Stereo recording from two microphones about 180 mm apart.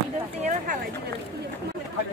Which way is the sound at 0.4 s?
45° right (ahead or behind).